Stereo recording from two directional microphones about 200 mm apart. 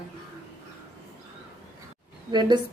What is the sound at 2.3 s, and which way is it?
Speech, 20° right (ahead or behind).